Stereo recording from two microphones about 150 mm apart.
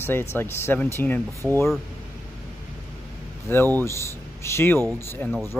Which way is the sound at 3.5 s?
15° left (ahead or behind).